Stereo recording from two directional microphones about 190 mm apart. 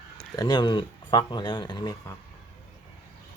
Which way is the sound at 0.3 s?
20° left (ahead or behind).